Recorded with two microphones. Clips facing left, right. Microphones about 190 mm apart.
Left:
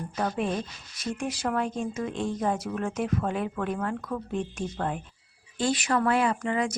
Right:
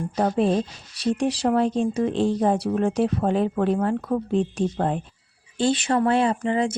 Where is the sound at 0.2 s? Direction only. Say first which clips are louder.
Right 8 dB; 35° right (ahead or behind).